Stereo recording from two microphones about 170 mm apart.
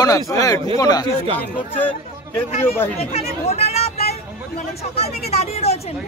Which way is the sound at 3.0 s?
35° left (ahead or behind).